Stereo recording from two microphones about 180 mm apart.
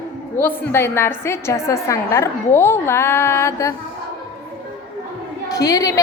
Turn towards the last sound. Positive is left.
turn(degrees=20)  # may be behind; listen again after turning